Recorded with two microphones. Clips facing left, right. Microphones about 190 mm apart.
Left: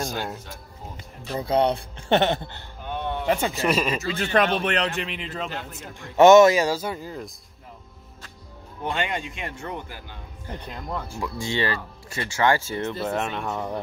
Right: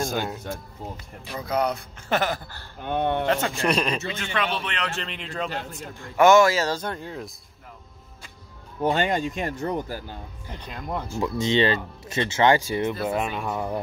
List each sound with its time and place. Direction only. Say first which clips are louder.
1.3 s speech: left 4 dB; 30° left (ahead or behind)
2.8 s speech: right 5 dB; 55° right (ahead or behind)
3.3 s speech: even; 10° left (ahead or behind)
4.1 s speech: left 6 dB; 40° left (ahead or behind)
5.0 s speech: even; 5° left (ahead or behind)
6.1 s speech: left 4 dB; 20° left (ahead or behind); by 7.3 s centre (ahead or behind)
8.8 s speech: right 5 dB; 40° right (ahead or behind)
10.4 s speech: left 3 dB; 15° right (ahead or behind)